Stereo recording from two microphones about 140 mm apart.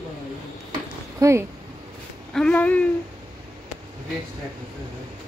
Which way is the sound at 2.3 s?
10° left (ahead or behind).